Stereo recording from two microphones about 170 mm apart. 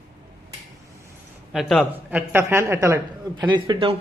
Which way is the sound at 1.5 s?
Centre (ahead or behind).